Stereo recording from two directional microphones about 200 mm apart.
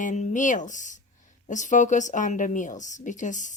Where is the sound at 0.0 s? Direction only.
40° left (ahead or behind).